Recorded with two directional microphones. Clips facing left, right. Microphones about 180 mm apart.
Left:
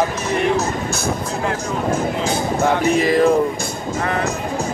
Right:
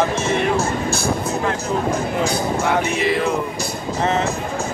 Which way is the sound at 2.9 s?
40° left (ahead or behind).